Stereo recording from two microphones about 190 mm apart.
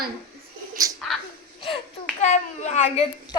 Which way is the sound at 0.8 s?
20° right (ahead or behind).